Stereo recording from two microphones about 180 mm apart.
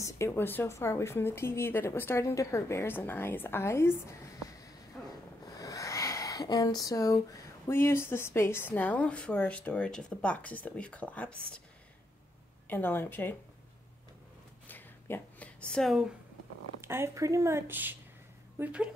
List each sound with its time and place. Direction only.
0.0 s speech: 15° left (ahead or behind)
4.9 s snort: 5° left (ahead or behind)
5.6 s a sound: 20° left (ahead or behind)
7.6 s speech: 15° left (ahead or behind)
12.6 s speech: 10° left (ahead or behind)
14.7 s a sound: 10° left (ahead or behind)
16.8 s speech: 15° right (ahead or behind)